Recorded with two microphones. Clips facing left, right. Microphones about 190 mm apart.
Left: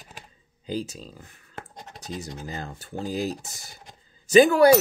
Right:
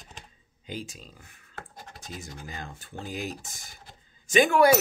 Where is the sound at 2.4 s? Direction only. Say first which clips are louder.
Left 5 dB; 40° left (ahead or behind).